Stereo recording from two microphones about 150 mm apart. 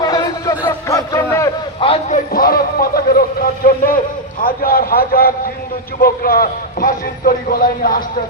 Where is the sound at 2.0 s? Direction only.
65° left (ahead or behind).